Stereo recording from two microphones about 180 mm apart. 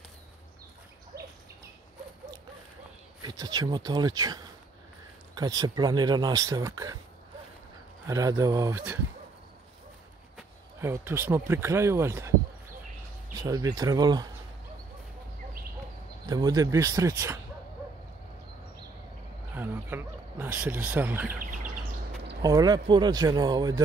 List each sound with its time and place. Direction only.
3.2 s speech: 20° right (ahead or behind)
8.1 s speech: 20° right (ahead or behind)
10.8 s speech: 15° right (ahead or behind)
13.4 s speech: 20° right (ahead or behind)
16.3 s speech: 20° right (ahead or behind)
19.5 s a sound: 10° right (ahead or behind)
21.4 s bird: 45° right (ahead or behind)
22.4 s speech: 20° right (ahead or behind)